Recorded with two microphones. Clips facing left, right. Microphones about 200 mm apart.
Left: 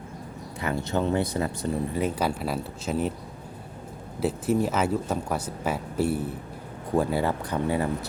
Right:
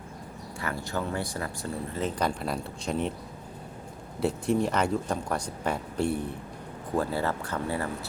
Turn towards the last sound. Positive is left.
turn(degrees=15)  # may be behind; listen again after turning